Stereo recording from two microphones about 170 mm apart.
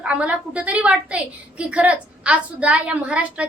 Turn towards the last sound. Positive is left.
turn(degrees=-5)  # may be behind; listen again after turning